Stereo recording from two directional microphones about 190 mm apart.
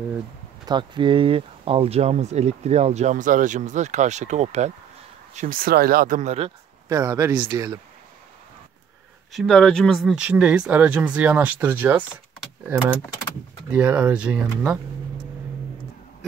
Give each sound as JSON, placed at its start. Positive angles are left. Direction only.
{"t": 0.7, "sound": "speech", "side_deg": -25}
{"t": 6.9, "sound": "speech", "side_deg": -15}
{"t": 9.3, "sound": "speech", "side_deg": 0}
{"t": 13.7, "sound": "speech", "side_deg": -5}